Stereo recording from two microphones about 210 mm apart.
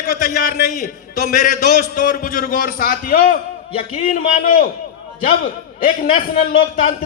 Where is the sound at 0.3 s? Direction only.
45° left (ahead or behind).